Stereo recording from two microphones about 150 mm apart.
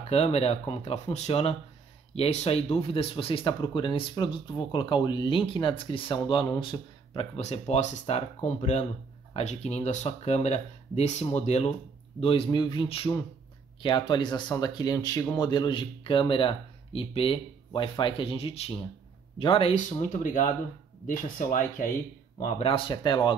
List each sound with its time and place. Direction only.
0.1 s speech: 45° left (ahead or behind)
12.2 s speech: 35° left (ahead or behind)
20.1 s speech: 60° left (ahead or behind)
22.6 s speech: 35° left (ahead or behind)